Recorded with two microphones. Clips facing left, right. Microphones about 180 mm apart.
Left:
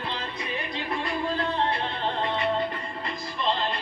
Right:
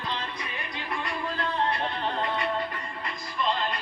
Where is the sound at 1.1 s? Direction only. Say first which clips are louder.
Left 4 dB; 25° left (ahead or behind).